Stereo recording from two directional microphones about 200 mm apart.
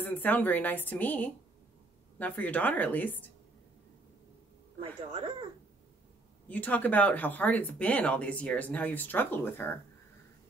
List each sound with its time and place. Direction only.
0.0 s speech: 10° left (ahead or behind)
4.7 s speech: 30° right (ahead or behind)
6.5 s speech: 10° left (ahead or behind)